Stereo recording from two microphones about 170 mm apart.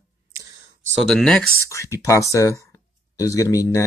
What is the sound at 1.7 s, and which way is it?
Speech, 20° left (ahead or behind).